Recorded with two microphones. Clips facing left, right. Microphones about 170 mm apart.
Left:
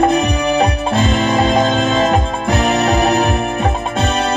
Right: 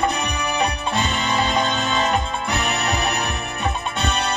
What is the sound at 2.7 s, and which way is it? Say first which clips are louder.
Music: left 12 dB; 90° left.